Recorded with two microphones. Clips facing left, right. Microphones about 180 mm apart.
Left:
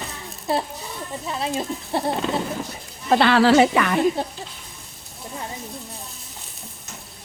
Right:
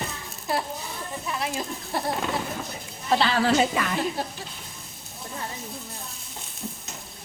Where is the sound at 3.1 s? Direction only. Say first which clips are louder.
Left 6 dB; 60° left (ahead or behind).